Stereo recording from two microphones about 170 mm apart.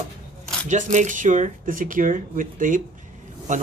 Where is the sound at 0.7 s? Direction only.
45° right (ahead or behind).